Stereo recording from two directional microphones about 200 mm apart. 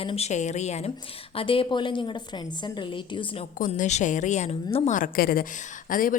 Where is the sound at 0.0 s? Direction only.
30° left (ahead or behind).